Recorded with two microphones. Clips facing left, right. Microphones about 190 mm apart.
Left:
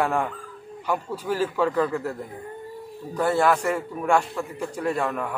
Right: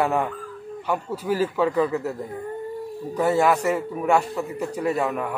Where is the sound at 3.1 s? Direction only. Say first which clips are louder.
Right 1 dB; 10° right (ahead or behind).